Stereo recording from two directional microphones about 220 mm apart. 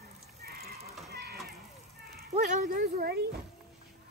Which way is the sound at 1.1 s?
45° right (ahead or behind).